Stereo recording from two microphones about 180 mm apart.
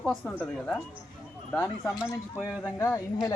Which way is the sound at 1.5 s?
15° left (ahead or behind).